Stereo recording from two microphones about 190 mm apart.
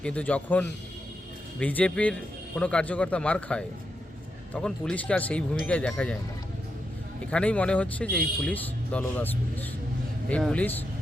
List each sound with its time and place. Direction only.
0.0 s speech: 5° left (ahead or behind)
7.3 s speech: 5° left (ahead or behind)